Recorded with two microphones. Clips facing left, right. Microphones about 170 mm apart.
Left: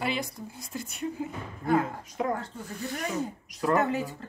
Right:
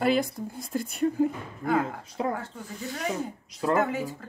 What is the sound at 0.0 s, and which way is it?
Speech, 50° right (ahead or behind).